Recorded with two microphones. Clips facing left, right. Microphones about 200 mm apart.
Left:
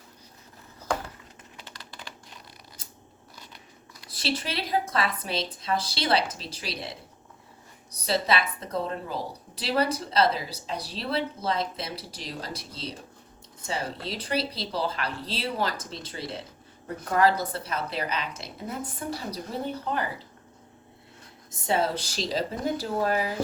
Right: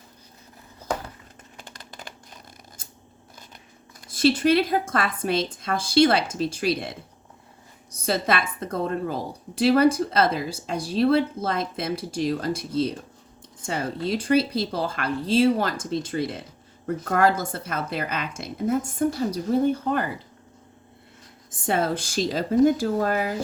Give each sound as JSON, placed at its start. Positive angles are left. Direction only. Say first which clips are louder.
{"t": 1.5, "sound": "typing", "louder": "right 3 dB", "side_deg": -45}
{"t": 4.0, "sound": "a woman's voice", "louder": "right 11 dB", "side_deg": -50}
{"t": 21.5, "sound": "a woman's voice", "louder": "right 2 dB", "side_deg": -50}